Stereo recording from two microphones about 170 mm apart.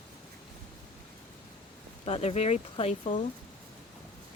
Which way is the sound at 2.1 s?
40° left (ahead or behind).